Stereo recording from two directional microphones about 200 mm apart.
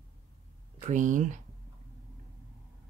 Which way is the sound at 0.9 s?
40° right (ahead or behind).